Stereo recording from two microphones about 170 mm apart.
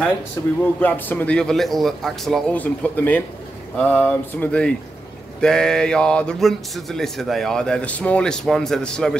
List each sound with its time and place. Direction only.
0.4 s speech: 15° left (ahead or behind)